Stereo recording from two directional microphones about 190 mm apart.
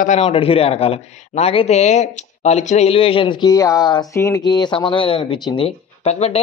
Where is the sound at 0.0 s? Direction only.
35° left (ahead or behind).